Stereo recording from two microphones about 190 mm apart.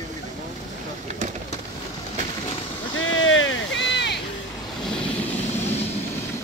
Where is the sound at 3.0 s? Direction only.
90° left; by 4.2 s 70° left (ahead or behind).